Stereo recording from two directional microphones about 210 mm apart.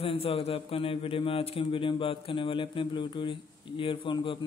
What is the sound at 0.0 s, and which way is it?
A man's voice, 25° left (ahead or behind).